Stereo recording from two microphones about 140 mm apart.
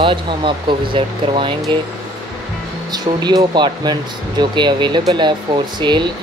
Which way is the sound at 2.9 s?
30° right (ahead or behind).